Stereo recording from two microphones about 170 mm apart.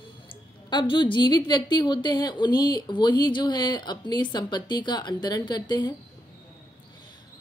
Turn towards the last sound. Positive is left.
turn(degrees=25)  # may be behind; listen again after turning